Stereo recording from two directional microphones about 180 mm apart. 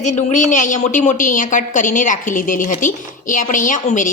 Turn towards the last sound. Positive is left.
turn(degrees=45)  # may be behind; listen again after turning